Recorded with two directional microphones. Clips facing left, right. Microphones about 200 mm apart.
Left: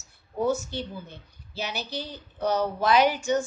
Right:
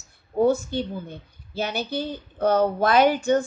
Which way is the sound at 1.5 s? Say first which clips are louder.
Right 6 dB; 55° right (ahead or behind).